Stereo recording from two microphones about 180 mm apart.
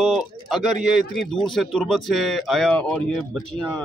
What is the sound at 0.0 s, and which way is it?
Speech, centre (ahead or behind).